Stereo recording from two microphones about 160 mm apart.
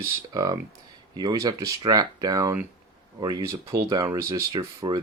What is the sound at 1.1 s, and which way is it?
Speech, 25° right (ahead or behind).